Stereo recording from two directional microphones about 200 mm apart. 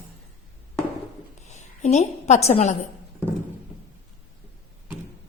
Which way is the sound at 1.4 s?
35° left (ahead or behind).